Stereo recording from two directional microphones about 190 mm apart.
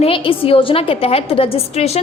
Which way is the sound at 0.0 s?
30° left (ahead or behind).